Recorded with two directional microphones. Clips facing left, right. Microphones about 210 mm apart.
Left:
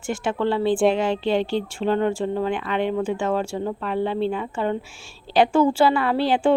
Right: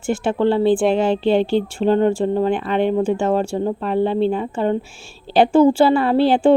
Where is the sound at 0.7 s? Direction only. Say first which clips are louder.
Right 3 dB; centre (ahead or behind).